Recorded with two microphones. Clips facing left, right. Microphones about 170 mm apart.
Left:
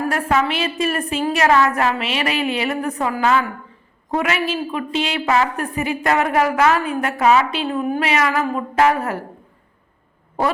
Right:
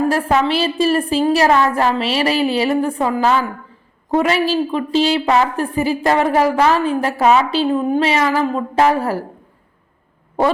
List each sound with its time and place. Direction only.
0.0 s a woman's voice: 30° right (ahead or behind)